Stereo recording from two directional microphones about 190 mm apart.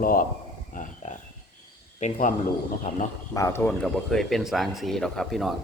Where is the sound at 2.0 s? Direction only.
40° left (ahead or behind).